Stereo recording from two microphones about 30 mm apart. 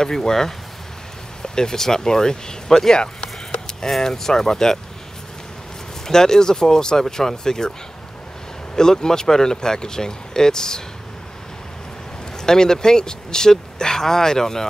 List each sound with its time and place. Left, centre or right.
0.0 s speech: centre
3.0 s a sound: left
4.0 s speech: centre
6.0 s speech: centre
8.7 s speech: left
12.4 s speech: left